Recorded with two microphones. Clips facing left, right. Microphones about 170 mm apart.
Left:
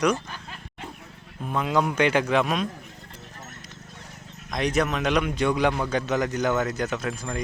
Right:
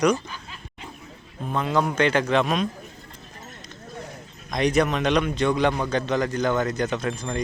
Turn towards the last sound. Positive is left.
turn(degrees=5)  # may be behind; listen again after turning